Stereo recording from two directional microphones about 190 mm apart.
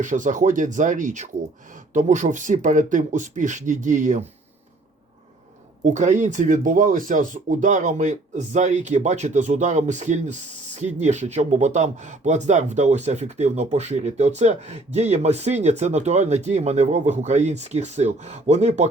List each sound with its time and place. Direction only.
0.0 s speech: 40° right (ahead or behind)
5.8 s speech: 40° right (ahead or behind)